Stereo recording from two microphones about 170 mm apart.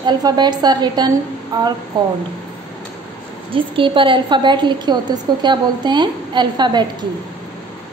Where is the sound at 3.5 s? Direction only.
30° right (ahead or behind).